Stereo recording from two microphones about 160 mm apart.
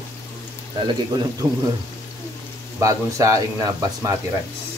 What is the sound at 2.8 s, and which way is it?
Speech, 20° right (ahead or behind).